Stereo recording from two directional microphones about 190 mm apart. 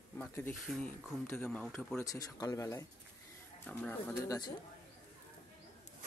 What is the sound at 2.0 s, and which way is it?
Speech, 20° left (ahead or behind).